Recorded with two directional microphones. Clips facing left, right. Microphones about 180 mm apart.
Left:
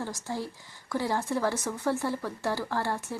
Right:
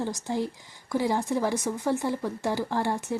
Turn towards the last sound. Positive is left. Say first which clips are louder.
# right 3 dB
turn(degrees=-20)  # may be behind; listen again after turning